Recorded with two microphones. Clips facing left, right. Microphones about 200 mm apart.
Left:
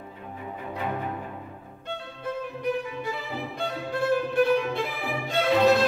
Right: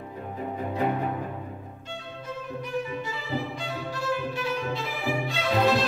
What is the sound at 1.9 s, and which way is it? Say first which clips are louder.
Music: left 5 dB; 60° left (ahead or behind).